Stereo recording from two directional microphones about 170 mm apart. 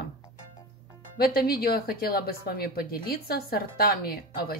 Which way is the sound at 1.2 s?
65° left (ahead or behind).